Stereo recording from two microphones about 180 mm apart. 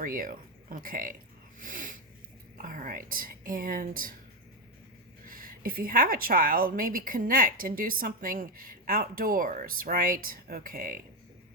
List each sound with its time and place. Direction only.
0.0 s speech: 50° right (ahead or behind)
1.5 s snort: 45° right (ahead or behind)
2.6 s a woman's voice: 50° right (ahead or behind)
5.2 s a woman's voice: 50° right (ahead or behind)